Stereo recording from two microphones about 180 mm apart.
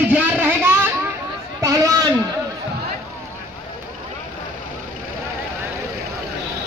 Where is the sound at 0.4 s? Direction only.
10° right (ahead or behind).